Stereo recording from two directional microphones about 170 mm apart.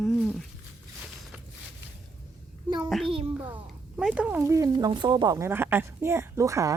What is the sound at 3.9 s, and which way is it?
A woman's voice, 5° right (ahead or behind).